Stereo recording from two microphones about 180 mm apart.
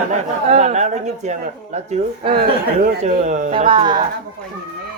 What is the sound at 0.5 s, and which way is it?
Speech, 40° right (ahead or behind).